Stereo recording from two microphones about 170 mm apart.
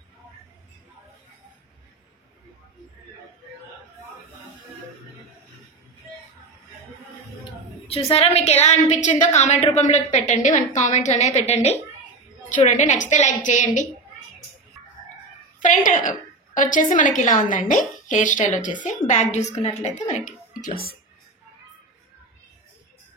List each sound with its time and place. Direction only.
7.9 s a woman's voice: 35° left (ahead or behind)
15.6 s a woman's voice: 50° left (ahead or behind)
20.6 s speech: 60° left (ahead or behind)